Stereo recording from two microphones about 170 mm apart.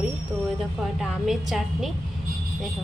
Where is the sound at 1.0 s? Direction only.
Centre (ahead or behind).